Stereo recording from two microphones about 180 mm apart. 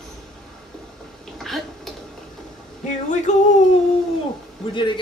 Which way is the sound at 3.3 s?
40° left (ahead or behind).